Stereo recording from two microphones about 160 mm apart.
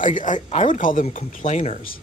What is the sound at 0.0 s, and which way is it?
Speech, 50° left (ahead or behind).